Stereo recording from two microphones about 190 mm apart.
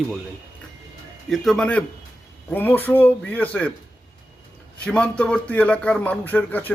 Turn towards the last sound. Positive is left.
turn(degrees=10)  # may be behind; listen again after turning